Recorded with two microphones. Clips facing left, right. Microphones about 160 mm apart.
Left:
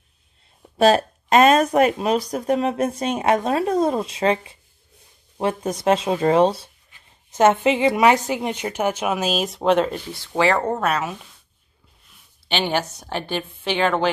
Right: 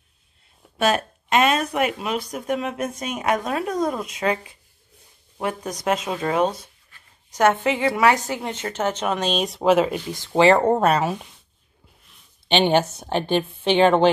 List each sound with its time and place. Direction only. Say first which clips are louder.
0.7 s speech: left 5 dB; 35° left (ahead or behind); by 11.1 s 30° right (ahead or behind)
12.4 s a woman's voice: right 5 dB; 25° right (ahead or behind)